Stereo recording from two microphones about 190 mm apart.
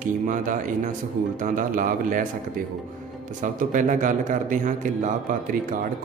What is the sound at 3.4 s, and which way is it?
A man's voice, 40° right (ahead or behind).